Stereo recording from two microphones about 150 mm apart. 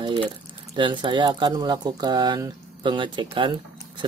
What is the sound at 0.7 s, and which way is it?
Speech, 30° right (ahead or behind).